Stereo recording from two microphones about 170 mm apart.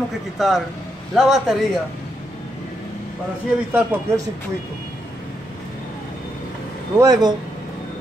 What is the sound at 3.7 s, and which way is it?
Speech, 10° right (ahead or behind).